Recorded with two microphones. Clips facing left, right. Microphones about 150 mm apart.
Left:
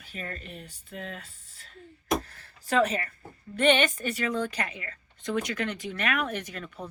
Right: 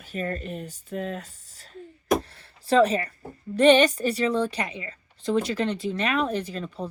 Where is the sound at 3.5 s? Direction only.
35° right (ahead or behind).